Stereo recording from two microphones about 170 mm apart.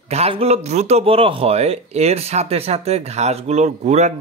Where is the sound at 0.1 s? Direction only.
35° right (ahead or behind).